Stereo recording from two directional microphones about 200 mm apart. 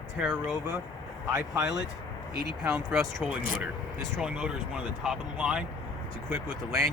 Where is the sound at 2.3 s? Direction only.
55° right (ahead or behind).